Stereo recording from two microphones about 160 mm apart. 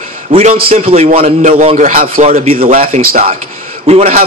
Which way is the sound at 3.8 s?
40° right (ahead or behind).